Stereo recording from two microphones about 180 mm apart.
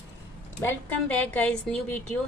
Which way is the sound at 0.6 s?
10° left (ahead or behind).